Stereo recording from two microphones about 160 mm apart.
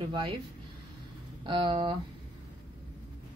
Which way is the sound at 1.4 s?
30° right (ahead or behind).